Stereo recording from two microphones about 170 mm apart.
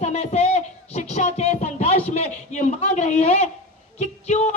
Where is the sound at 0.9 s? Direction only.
40° left (ahead or behind).